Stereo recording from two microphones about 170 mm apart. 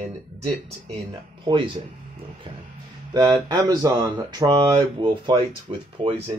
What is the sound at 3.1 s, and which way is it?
Speech, 20° right (ahead or behind).